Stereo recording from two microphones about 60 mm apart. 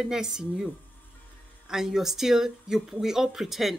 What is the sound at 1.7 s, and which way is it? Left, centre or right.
Speech, centre.